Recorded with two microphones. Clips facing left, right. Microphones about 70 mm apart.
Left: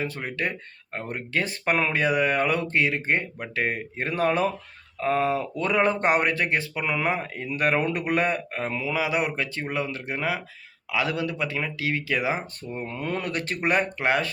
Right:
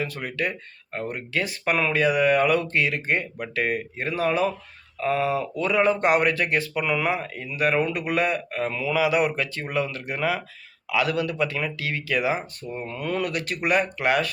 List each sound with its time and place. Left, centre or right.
0.0 s speech: left
7.1 s speech: left